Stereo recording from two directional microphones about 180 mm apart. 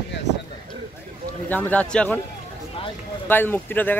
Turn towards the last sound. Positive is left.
turn(degrees=10)  # may be behind; listen again after turning